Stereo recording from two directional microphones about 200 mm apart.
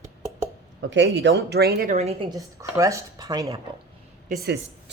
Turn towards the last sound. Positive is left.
turn(degrees=-55)  # may be behind; listen again after turning